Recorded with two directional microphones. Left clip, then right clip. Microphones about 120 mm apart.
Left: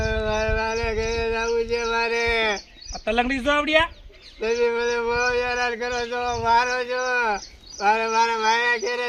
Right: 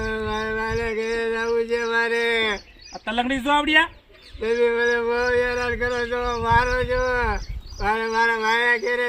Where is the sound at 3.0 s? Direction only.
45° left (ahead or behind).